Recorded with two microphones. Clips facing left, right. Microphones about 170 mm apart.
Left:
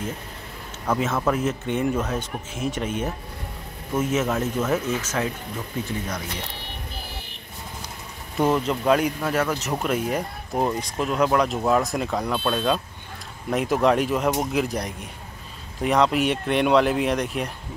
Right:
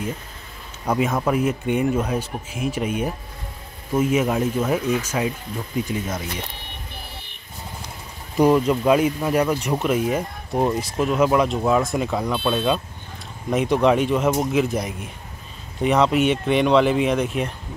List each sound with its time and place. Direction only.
0.8 s speech: 15° right (ahead or behind)
8.6 s speech: 5° right (ahead or behind)